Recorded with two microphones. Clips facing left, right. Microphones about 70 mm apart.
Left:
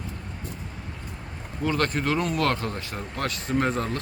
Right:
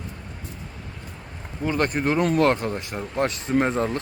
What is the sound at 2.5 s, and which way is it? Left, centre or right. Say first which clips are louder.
Speech: right 4 dB; right.